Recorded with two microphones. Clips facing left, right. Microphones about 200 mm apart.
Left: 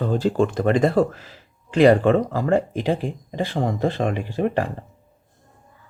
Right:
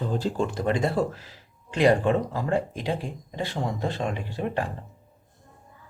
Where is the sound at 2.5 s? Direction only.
55° left (ahead or behind).